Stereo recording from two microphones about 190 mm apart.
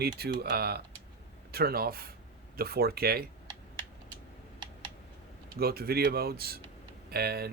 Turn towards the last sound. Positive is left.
turn(degrees=-55)  # may be behind; listen again after turning